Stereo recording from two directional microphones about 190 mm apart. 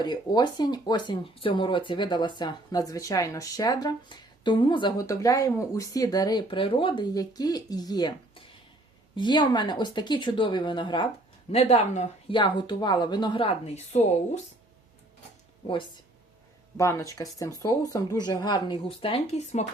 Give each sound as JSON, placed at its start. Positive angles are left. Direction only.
{"t": 0.0, "sound": "speech", "side_deg": 20}
{"t": 15.6, "sound": "speech", "side_deg": 25}
{"t": 16.7, "sound": "speech", "side_deg": 15}